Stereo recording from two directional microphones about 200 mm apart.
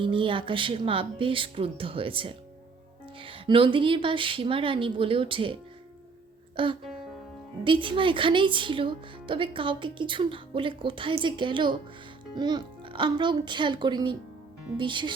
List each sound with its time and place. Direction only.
0.0 s speech: 25° right (ahead or behind)
6.6 s speech: 25° right (ahead or behind)